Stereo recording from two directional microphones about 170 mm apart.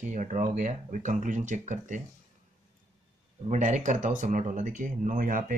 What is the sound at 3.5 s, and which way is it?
Speech, 45° right (ahead or behind).